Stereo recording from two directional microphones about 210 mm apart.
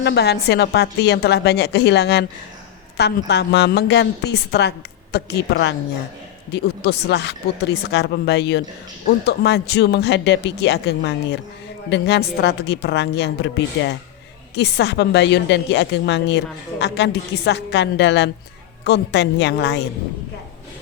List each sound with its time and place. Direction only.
0.0 s a woman's voice: 55° left (ahead or behind)